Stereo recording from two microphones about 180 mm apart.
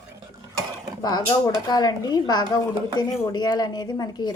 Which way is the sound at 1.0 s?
20° left (ahead or behind).